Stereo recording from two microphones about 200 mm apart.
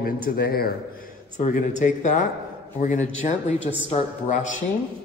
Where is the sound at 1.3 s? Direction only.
40° left (ahead or behind).